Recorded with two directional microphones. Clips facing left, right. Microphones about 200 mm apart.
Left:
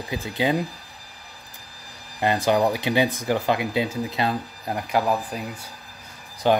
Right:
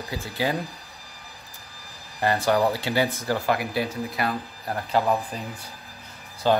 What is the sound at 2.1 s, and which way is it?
Speech, 20° left (ahead or behind).